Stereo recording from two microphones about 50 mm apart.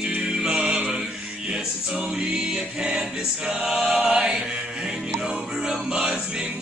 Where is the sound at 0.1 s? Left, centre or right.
Centre.